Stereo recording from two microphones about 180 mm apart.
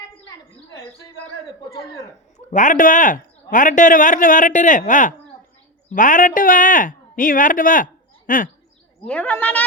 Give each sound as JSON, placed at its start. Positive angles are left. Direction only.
{"t": 1.8, "sound": "a woman's voice", "side_deg": 15}
{"t": 2.5, "sound": "a woman's voice", "side_deg": 45}
{"t": 9.0, "sound": "a woman's voice", "side_deg": 5}